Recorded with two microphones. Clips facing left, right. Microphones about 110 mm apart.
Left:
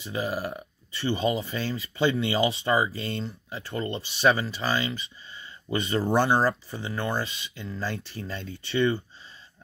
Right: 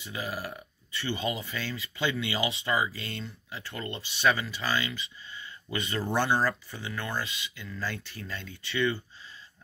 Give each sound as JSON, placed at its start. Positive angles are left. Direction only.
{"t": 0.0, "sound": "speech", "side_deg": 30}